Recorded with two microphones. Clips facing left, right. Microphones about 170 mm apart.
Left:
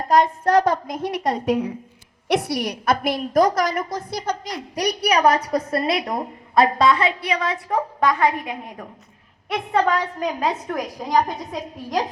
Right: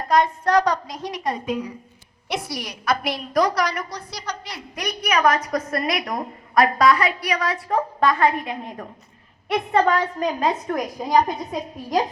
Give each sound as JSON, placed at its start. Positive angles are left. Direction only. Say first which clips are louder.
{"t": 0.1, "sound": "a woman's voice", "louder": "left 2 dB", "side_deg": 40}
{"t": 2.2, "sound": "a woman's voice", "louder": "left 7 dB", "side_deg": 75}